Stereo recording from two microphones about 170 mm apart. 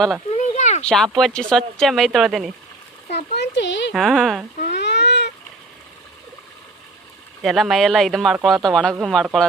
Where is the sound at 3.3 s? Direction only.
85° left.